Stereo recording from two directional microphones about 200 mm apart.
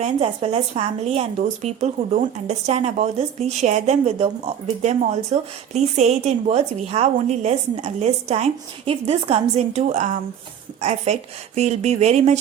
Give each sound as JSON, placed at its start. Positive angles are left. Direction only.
{"t": 0.0, "sound": "a woman's voice", "side_deg": -30}